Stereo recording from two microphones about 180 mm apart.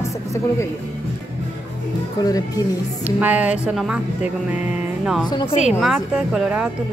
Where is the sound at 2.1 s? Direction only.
20° left (ahead or behind).